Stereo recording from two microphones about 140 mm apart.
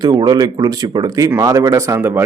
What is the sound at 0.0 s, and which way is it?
Speech, 30° right (ahead or behind).